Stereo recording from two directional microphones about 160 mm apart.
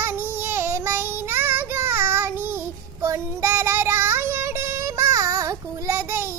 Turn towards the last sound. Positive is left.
turn(degrees=-15)  # may be behind; listen again after turning